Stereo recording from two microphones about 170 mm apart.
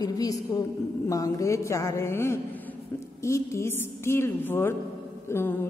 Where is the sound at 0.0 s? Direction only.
20° left (ahead or behind).